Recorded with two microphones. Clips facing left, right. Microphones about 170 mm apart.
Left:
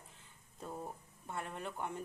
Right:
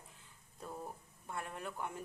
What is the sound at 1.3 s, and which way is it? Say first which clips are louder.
Speech: left 1 dB; centre (ahead or behind).